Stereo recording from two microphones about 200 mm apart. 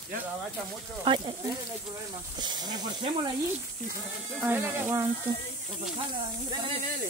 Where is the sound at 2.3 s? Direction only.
20° right (ahead or behind).